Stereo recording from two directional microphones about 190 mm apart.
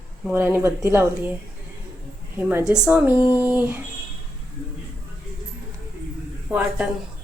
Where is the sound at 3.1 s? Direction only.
20° left (ahead or behind).